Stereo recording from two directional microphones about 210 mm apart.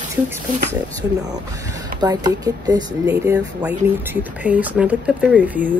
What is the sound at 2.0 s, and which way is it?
Speech, 15° right (ahead or behind).